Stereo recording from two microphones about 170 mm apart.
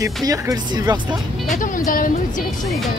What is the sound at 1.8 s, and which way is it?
Speech, 55° left (ahead or behind).